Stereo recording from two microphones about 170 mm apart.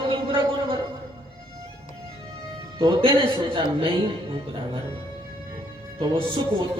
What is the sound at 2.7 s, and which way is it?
Speech, 30° right (ahead or behind).